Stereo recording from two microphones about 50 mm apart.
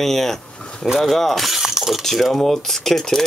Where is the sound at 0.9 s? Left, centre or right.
Centre.